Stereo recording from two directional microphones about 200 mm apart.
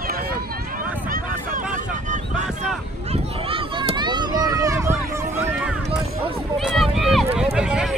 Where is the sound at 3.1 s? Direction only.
30° right (ahead or behind).